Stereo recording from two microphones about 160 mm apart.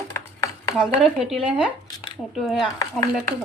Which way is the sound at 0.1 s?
15° left (ahead or behind).